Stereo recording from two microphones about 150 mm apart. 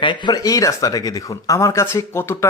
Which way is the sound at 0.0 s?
30° left (ahead or behind).